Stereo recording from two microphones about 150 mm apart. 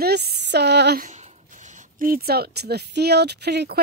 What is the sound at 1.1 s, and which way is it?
Speech, 50° right (ahead or behind).